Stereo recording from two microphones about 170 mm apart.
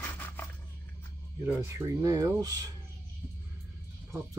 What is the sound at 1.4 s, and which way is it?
Speech, 15° right (ahead or behind).